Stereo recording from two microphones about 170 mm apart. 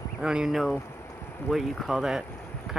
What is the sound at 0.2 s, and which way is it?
Speech, 5° right (ahead or behind).